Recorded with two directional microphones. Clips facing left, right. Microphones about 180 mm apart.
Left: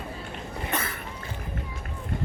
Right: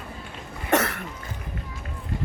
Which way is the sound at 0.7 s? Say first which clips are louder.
Right 11 dB; 75° right (ahead or behind).